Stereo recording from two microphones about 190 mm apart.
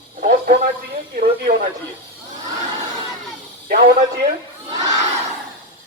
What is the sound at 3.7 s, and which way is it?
Speech, 55° right (ahead or behind).